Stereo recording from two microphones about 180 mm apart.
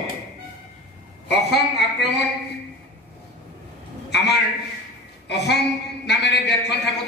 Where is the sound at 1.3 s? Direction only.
70° left (ahead or behind).